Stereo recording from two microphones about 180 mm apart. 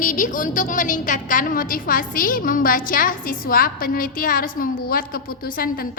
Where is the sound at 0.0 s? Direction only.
45° left (ahead or behind).